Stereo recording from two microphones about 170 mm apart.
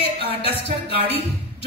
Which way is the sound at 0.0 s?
35° left (ahead or behind).